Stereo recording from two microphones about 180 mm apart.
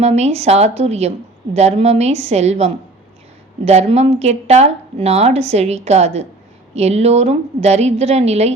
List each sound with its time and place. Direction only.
0.0 s speech: 35° right (ahead or behind)